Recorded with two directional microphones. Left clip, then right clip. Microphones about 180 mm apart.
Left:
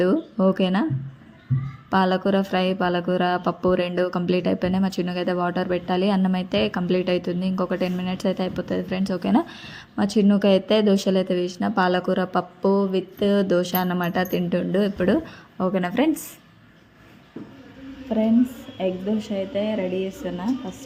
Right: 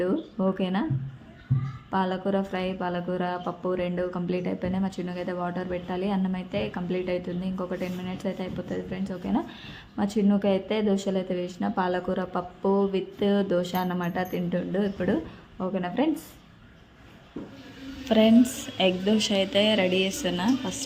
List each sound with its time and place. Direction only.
0.0 s music: 25° left (ahead or behind)
1.9 s music: 30° left (ahead or behind)
9.6 s music: 20° left (ahead or behind)
18.1 s a woman's voice: 5° right (ahead or behind)